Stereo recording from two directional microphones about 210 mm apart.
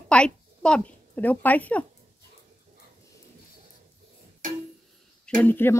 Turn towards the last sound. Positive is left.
turn(degrees=10)  # may be behind; listen again after turning